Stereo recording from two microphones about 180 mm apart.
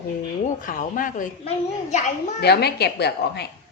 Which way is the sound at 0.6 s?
50° left (ahead or behind).